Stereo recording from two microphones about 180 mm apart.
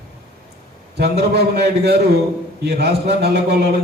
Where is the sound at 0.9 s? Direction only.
65° right (ahead or behind).